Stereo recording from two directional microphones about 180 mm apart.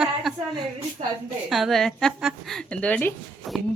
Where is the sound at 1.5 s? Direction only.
Centre (ahead or behind).